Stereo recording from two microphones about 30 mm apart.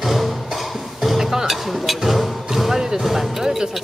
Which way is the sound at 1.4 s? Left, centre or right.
Centre.